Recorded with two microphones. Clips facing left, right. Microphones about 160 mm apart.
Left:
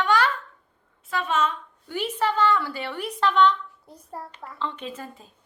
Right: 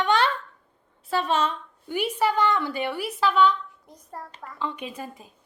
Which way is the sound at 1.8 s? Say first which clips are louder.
Right 2 dB; 10° right (ahead or behind).